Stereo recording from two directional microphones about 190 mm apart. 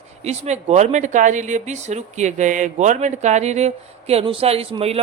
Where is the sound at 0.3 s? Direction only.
35° right (ahead or behind).